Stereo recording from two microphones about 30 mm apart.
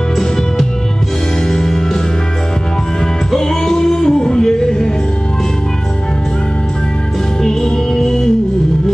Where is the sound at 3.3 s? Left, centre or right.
Centre.